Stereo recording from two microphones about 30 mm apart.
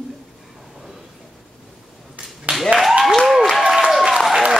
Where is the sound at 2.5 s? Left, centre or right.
Right.